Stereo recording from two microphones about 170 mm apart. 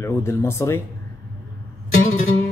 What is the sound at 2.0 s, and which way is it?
Music, 45° left (ahead or behind).